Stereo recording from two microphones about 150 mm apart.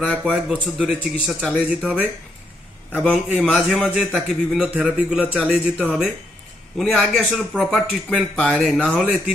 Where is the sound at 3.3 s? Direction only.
5° right (ahead or behind).